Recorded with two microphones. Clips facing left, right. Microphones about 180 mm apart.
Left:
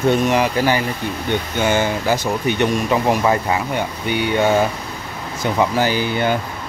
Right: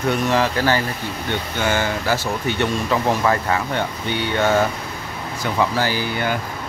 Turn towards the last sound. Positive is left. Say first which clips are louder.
# left 4 dB
turn(degrees=20)  # may be behind; listen again after turning